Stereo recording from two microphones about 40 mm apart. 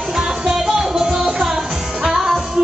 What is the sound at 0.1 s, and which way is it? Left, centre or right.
Music, centre.